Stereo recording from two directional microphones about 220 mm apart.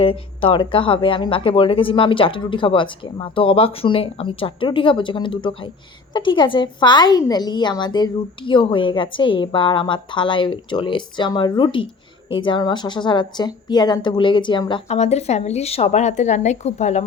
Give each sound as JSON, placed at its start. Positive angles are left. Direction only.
{"t": 0.0, "sound": "speech", "side_deg": 25}